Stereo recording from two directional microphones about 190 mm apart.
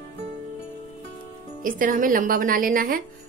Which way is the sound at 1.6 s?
45° right (ahead or behind).